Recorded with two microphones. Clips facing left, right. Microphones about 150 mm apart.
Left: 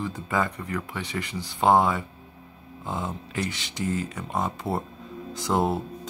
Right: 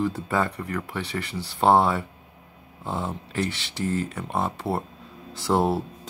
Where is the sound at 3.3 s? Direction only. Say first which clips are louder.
Right 3 dB; 15° left (ahead or behind).